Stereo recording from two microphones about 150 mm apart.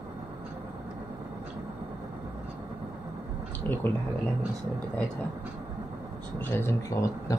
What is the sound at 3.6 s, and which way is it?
Speech, 15° left (ahead or behind).